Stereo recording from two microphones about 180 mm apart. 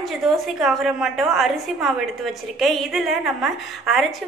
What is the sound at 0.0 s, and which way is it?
A woman's voice, centre (ahead or behind).